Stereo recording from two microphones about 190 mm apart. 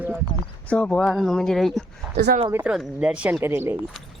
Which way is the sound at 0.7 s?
5° left (ahead or behind).